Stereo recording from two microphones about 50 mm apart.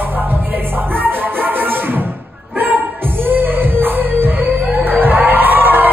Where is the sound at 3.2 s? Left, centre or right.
Right.